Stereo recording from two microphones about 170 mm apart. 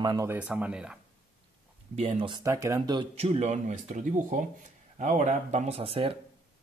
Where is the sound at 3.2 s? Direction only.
40° right (ahead or behind).